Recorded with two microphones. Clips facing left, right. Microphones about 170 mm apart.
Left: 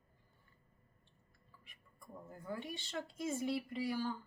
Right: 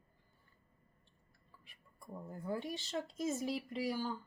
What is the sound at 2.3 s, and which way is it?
Speech, 30° right (ahead or behind).